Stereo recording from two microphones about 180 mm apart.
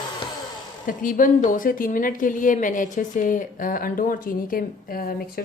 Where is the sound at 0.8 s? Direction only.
50° left (ahead or behind).